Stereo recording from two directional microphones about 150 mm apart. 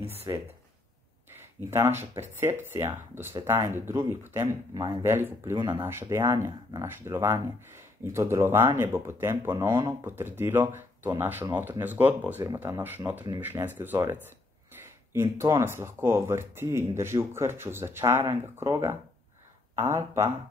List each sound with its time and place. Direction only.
0.0 s speech: 40° right (ahead or behind)
1.7 s speech: 15° right (ahead or behind)
5.9 s speech: 15° right (ahead or behind)